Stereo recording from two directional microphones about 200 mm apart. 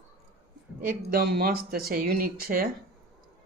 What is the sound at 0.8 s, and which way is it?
Speech, 45° right (ahead or behind).